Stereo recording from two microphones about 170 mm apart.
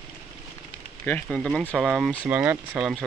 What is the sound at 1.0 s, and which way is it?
Speech, 5° left (ahead or behind).